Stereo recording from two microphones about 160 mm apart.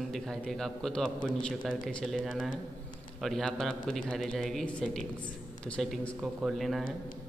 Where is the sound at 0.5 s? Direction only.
Centre (ahead or behind).